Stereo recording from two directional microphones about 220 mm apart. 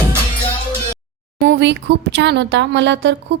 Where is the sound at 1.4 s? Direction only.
50° right (ahead or behind).